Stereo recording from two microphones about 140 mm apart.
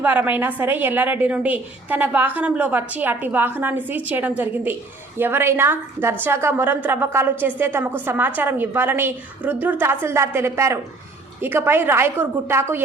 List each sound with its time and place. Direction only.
0.0 s a woman's voice: 10° right (ahead or behind)